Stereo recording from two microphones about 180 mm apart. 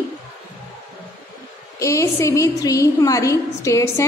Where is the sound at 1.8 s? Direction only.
15° left (ahead or behind).